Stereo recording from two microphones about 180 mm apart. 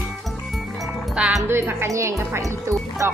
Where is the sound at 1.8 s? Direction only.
15° right (ahead or behind).